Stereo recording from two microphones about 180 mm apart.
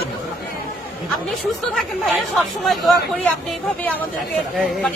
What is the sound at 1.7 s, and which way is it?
Speech, centre (ahead or behind).